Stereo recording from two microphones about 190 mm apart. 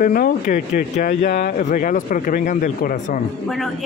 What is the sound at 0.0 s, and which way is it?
Speech, 45° left (ahead or behind).